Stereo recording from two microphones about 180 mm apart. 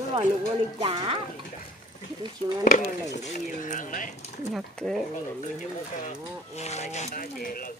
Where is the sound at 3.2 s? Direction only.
45° left (ahead or behind).